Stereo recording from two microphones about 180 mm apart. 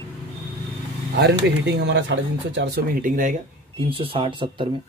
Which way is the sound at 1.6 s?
70° right (ahead or behind).